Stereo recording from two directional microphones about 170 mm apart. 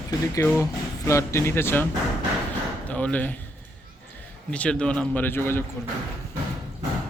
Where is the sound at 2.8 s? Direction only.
10° left (ahead or behind).